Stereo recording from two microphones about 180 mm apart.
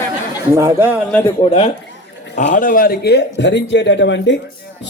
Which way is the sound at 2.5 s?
50° left (ahead or behind).